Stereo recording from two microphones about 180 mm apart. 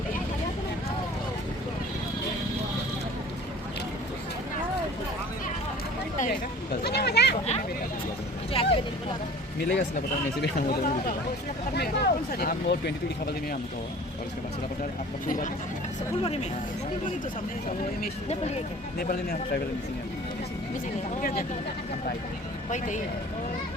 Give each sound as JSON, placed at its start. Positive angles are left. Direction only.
{"t": 6.8, "sound": "goat", "side_deg": 65}
{"t": 8.6, "sound": "vehicle", "side_deg": 30}
{"t": 9.6, "sound": "speech", "side_deg": 60}
{"t": 16.2, "sound": "speech", "side_deg": 35}
{"t": 18.3, "sound": "speech", "side_deg": 40}
{"t": 18.9, "sound": "speech", "side_deg": 55}
{"t": 21.2, "sound": "speech", "side_deg": 50}